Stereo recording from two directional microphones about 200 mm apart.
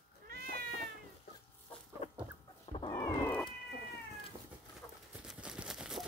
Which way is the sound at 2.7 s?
25° left (ahead or behind).